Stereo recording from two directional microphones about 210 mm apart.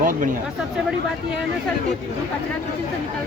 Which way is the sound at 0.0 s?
40° right (ahead or behind).